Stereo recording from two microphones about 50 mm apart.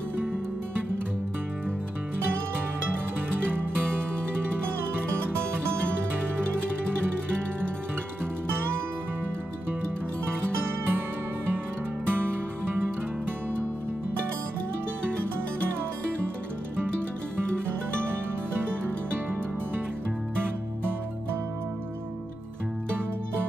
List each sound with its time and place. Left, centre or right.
3.5 s music: right
10.2 s music: right
12.1 s music: right